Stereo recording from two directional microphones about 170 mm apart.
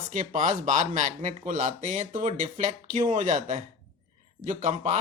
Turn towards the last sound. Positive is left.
turn(degrees=-45)  # may be behind; listen again after turning